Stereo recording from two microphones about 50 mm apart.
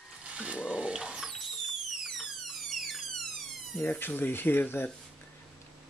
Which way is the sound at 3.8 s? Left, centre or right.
Left.